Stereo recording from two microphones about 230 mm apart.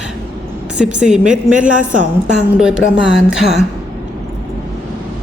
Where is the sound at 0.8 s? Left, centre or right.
Centre.